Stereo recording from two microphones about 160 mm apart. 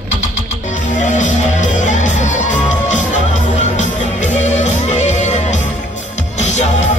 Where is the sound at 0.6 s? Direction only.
50° left (ahead or behind).